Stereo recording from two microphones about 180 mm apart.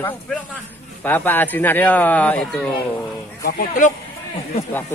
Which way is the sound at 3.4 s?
45° left (ahead or behind).